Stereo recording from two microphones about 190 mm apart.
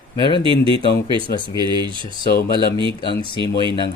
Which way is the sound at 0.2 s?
25° left (ahead or behind).